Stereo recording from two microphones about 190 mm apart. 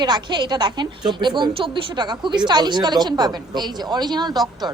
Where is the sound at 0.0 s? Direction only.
25° right (ahead or behind).